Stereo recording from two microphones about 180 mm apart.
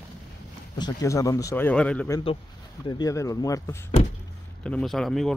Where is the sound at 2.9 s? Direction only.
20° left (ahead or behind).